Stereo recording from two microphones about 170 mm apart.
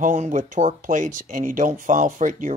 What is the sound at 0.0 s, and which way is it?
Speech, 50° right (ahead or behind).